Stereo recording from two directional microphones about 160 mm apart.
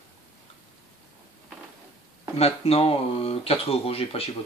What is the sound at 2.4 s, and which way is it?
Speech, 40° left (ahead or behind).